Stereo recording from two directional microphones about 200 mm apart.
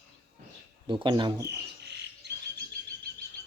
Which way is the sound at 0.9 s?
20° right (ahead or behind).